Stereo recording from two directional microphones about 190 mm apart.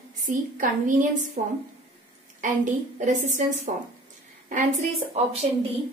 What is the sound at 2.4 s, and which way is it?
A woman's voice, 40° right (ahead or behind).